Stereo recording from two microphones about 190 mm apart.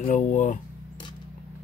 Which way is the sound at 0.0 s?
40° left (ahead or behind).